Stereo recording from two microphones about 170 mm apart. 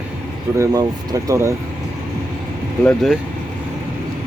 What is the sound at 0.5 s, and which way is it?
Speech, 20° right (ahead or behind).